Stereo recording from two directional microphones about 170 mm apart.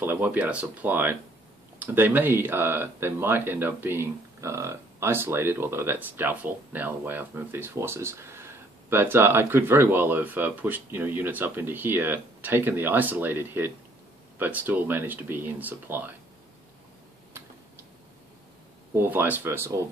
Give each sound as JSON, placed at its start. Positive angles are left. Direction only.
{"t": 0.0, "sound": "speech", "side_deg": -10}
{"t": 18.9, "sound": "speech", "side_deg": -10}